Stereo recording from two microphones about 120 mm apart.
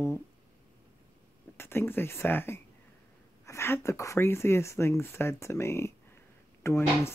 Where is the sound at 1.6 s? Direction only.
20° left (ahead or behind).